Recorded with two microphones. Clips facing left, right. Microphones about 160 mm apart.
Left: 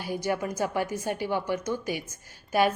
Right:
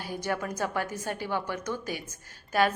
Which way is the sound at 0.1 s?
10° left (ahead or behind).